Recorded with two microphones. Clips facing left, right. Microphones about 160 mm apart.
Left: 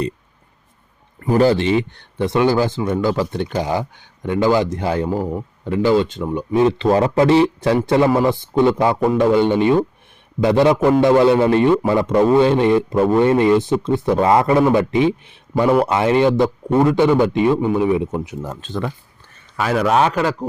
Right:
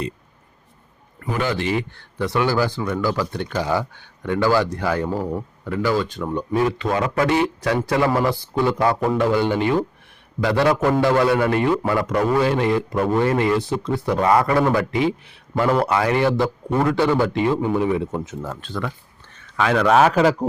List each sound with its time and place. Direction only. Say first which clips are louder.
1.2 s speech: left 8 dB; 35° left (ahead or behind); by 18.9 s 20° left (ahead or behind)
19.5 s a man's voice: even; 5° left (ahead or behind)